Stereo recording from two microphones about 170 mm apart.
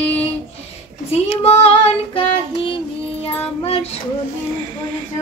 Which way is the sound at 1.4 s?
35° left (ahead or behind).